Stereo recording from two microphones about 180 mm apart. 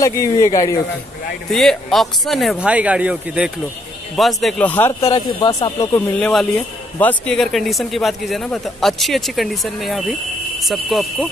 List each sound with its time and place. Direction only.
0.0 s speech: 15° left (ahead or behind)
1.5 s speech: centre (ahead or behind)